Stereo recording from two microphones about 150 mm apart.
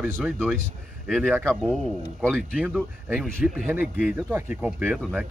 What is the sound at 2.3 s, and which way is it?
A man's voice, 5° left (ahead or behind).